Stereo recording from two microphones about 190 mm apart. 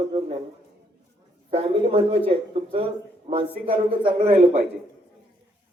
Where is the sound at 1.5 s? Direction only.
30° right (ahead or behind).